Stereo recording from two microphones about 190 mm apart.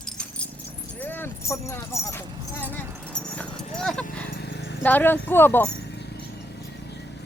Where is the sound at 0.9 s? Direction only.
10° left (ahead or behind).